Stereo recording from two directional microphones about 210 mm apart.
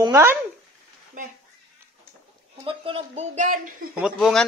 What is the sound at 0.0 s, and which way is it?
Speech, 10° right (ahead or behind).